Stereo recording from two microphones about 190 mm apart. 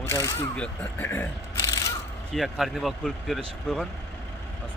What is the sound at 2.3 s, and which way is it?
Speech, centre (ahead or behind).